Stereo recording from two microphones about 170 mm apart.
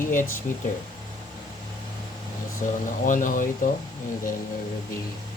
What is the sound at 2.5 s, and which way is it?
Speech, 50° left (ahead or behind).